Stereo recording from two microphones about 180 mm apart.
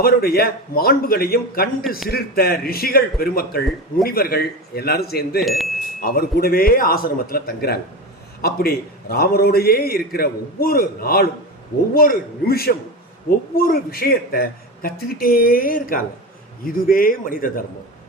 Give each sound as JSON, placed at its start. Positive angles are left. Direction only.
{"t": 0.0, "sound": "a man's voice", "side_deg": 60}
{"t": 5.5, "sound": "speech", "side_deg": 0}
{"t": 6.0, "sound": "a man's voice", "side_deg": 55}